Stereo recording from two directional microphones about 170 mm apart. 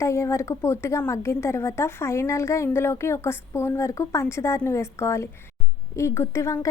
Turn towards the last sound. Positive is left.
turn(degrees=20)  # may be behind; listen again after turning